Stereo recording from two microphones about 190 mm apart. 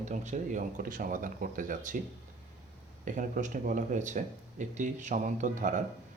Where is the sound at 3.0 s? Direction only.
45° right (ahead or behind).